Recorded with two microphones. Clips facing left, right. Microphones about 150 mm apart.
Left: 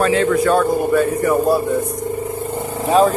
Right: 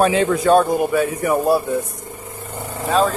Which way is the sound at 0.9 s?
5° right (ahead or behind).